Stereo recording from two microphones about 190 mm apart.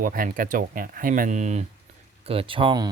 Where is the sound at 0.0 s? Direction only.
45° right (ahead or behind).